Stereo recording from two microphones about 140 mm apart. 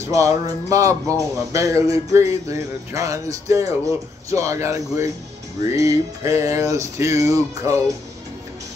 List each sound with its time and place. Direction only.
0.1 s music: 25° right (ahead or behind)